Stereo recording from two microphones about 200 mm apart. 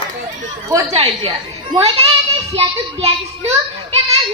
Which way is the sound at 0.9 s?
30° right (ahead or behind).